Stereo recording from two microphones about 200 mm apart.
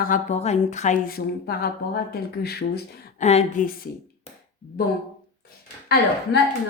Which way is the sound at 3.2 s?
35° left (ahead or behind).